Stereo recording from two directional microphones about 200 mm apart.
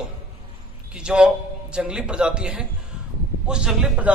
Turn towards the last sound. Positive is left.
turn(degrees=-5)  # may be behind; listen again after turning